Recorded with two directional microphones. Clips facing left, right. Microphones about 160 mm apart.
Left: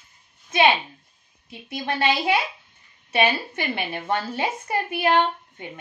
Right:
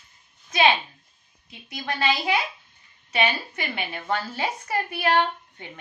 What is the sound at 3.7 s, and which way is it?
A woman's voice, 25° left (ahead or behind).